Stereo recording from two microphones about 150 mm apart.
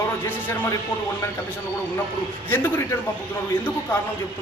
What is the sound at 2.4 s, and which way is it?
Speech, 15° left (ahead or behind).